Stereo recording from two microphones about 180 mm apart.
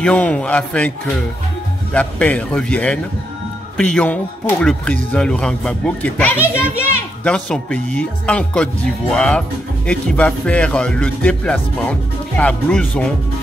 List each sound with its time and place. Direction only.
0.0 s a man's voice: 5° left (ahead or behind)
2.0 s a man's voice: 5° left (ahead or behind)